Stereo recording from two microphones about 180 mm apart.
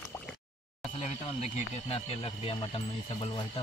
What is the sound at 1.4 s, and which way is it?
Speech, 35° left (ahead or behind).